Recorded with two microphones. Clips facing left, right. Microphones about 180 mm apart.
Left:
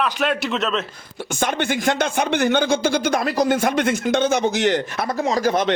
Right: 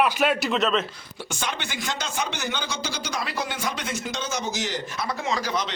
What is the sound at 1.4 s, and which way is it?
A man's voice, 50° left (ahead or behind).